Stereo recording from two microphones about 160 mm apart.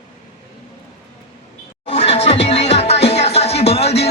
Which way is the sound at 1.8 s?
40° left (ahead or behind).